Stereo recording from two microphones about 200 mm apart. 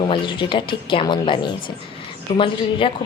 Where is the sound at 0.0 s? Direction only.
25° left (ahead or behind).